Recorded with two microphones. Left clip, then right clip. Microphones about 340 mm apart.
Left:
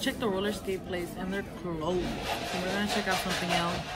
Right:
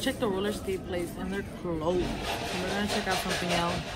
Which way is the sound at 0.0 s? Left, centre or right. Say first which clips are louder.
Right 1 dB; centre.